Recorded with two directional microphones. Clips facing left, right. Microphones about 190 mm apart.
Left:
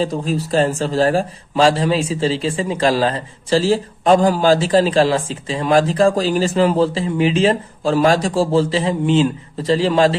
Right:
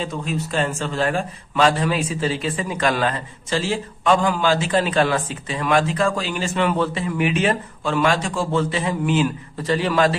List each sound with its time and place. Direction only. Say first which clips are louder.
0.0 s speech: left 6 dB; 35° left (ahead or behind)